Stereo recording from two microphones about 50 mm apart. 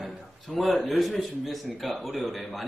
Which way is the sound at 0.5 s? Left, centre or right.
Centre.